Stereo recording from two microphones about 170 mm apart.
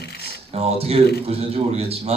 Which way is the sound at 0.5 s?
35° right (ahead or behind).